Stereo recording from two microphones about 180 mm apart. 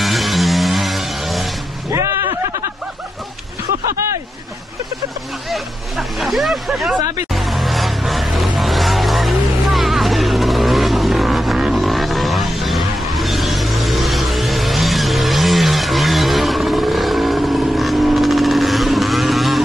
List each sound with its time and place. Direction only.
0.0 s vehicle: centre (ahead or behind)
1.9 s music: 15° right (ahead or behind)
5.5 s hubbub: centre (ahead or behind)
7.3 s vehicle: centre (ahead or behind)